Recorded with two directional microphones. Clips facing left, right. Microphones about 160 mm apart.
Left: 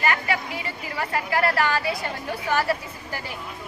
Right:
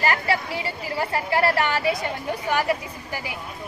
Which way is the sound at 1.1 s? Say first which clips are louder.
Right 1 dB; 25° right (ahead or behind).